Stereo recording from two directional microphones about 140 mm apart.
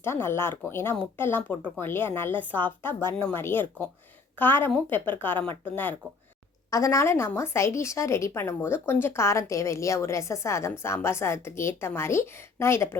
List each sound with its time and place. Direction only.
0.0 s speech: 20° left (ahead or behind)
6.7 s a woman's voice: 25° left (ahead or behind)